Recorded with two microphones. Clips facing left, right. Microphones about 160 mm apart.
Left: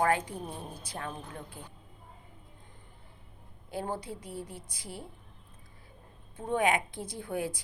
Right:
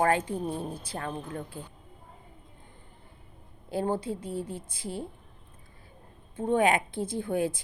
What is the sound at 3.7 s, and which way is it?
A woman's voice, 30° right (ahead or behind).